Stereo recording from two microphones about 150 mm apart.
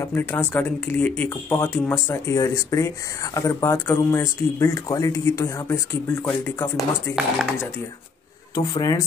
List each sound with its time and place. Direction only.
0.0 s speech: 15° left (ahead or behind)
8.5 s speech: 25° left (ahead or behind)